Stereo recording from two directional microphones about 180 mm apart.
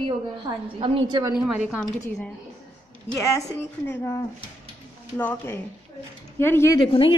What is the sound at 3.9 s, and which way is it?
Speech, 15° left (ahead or behind).